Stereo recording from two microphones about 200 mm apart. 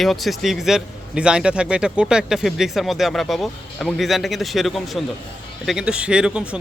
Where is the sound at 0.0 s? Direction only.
Centre (ahead or behind).